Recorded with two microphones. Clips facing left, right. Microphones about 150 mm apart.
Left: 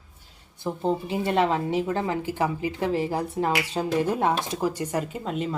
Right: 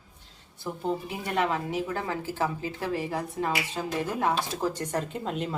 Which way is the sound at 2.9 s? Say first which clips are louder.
Left 5 dB; 30° left (ahead or behind).